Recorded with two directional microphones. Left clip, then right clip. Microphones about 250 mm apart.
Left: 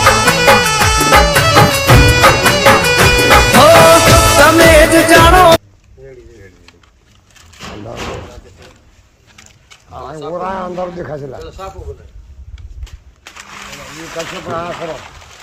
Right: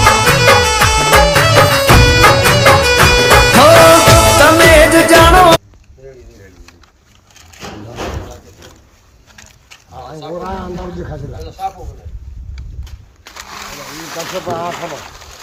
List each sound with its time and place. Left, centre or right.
0.1 s music: centre
10.4 s a man's voice: centre
13.3 s a sound: right
14.7 s speech: right